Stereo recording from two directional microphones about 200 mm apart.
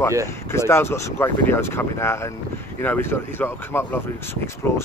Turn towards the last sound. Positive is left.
turn(degrees=10)  # may be behind; listen again after turning